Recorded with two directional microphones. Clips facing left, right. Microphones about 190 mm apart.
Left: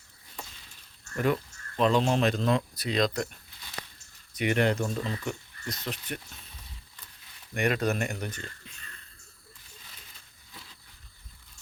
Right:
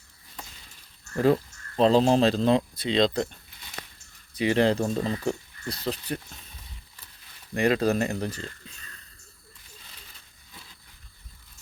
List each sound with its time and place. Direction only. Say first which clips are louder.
1.1 s speech: right 6 dB; 30° right (ahead or behind)
4.4 s speech: right 4 dB; 30° right (ahead or behind)
7.5 s speech: right 5 dB; 30° right (ahead or behind)